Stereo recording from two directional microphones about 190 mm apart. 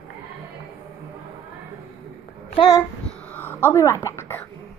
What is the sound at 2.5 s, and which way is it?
Speech, 20° left (ahead or behind).